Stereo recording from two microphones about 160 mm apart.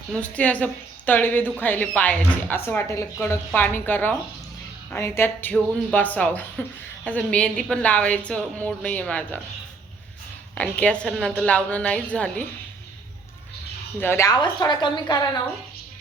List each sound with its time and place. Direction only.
0.2 s a woman's voice: 10° left (ahead or behind)
10.5 s a woman's voice: 5° left (ahead or behind)
14.0 s a woman's voice: 15° left (ahead or behind)